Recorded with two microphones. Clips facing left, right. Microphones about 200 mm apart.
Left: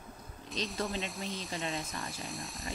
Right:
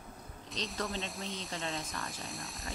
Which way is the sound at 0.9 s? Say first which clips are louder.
Left 2 dB; centre (ahead or behind).